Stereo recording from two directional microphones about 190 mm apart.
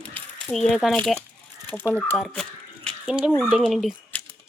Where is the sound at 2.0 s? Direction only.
5° left (ahead or behind).